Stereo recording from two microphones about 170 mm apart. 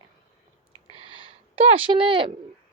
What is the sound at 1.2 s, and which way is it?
Speech, 35° right (ahead or behind).